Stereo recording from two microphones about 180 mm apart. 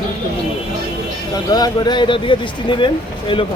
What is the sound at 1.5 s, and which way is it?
Speech, 20° left (ahead or behind).